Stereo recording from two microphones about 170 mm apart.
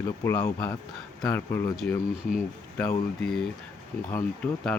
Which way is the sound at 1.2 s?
10° left (ahead or behind).